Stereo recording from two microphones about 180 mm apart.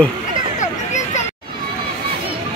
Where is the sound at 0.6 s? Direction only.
40° left (ahead or behind).